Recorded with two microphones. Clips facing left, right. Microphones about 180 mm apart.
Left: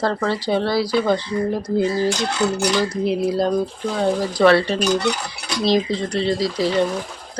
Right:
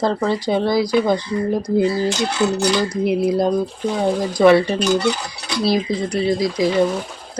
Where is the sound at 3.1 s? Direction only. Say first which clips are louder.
Right 3 dB; 15° right (ahead or behind).